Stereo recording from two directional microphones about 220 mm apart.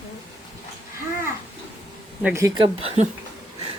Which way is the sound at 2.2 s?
15° right (ahead or behind).